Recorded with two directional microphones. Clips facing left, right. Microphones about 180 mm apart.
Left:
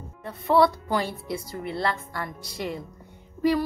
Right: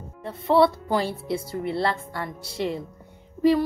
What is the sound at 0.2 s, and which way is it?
Speech, 30° right (ahead or behind).